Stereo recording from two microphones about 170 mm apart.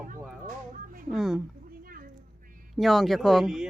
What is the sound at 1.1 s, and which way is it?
Speech, centre (ahead or behind).